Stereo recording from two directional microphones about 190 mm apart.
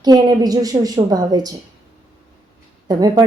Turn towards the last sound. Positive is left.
turn(degrees=-20)  # may be behind; listen again after turning